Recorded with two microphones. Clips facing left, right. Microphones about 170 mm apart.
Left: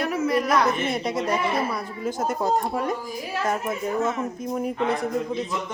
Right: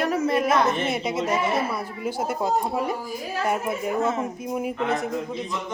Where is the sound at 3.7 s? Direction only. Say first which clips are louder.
Right 1 dB; 30° right (ahead or behind).